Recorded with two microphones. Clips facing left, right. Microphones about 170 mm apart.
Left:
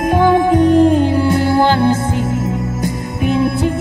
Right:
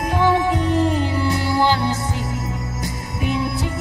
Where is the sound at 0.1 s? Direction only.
50° left (ahead or behind).